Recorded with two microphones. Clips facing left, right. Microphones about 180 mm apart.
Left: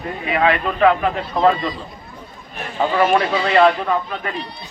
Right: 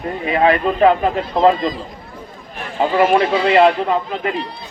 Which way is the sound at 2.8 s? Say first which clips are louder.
Right 2 dB; 25° right (ahead or behind).